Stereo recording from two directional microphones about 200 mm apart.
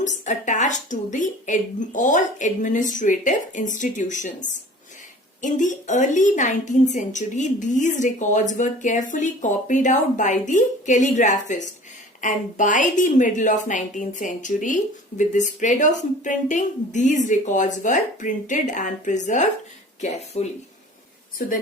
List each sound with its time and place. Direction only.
0.0 s a woman's voice: 40° left (ahead or behind)
21.4 s speech: 45° left (ahead or behind)